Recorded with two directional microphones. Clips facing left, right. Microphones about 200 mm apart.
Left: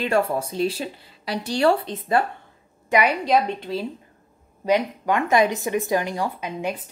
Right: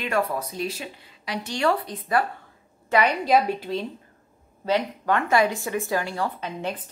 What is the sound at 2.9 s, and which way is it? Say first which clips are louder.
Speech: left 1 dB; 10° left (ahead or behind).